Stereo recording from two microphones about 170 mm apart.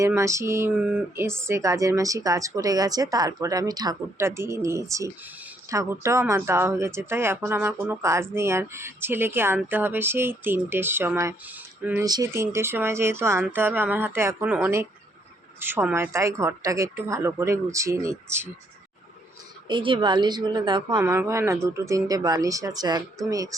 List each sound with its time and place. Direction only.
0.0 s speech: 15° right (ahead or behind)
12.0 s speech: 20° right (ahead or behind)
19.6 s speech: 30° right (ahead or behind)
21.0 s speech: 15° right (ahead or behind)